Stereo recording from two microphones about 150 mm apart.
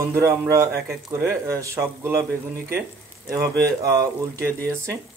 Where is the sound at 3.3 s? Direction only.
20° right (ahead or behind).